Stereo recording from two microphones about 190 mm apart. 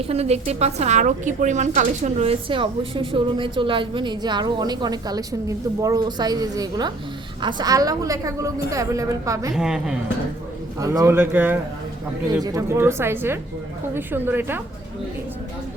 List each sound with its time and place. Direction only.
0.1 s a woman's voice: 35° right (ahead or behind); by 9.5 s 15° right (ahead or behind)
9.6 s speech: 5° right (ahead or behind)
10.8 s a woman's voice: 15° right (ahead or behind)